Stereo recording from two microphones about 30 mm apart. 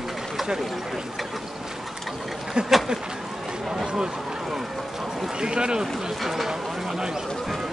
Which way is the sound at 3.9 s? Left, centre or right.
Right.